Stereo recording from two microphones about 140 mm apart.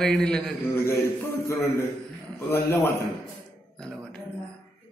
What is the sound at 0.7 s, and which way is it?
A man's voice, 20° left (ahead or behind).